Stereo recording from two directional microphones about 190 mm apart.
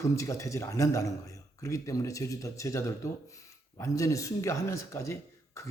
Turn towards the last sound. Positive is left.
turn(degrees=15)  # may be behind; listen again after turning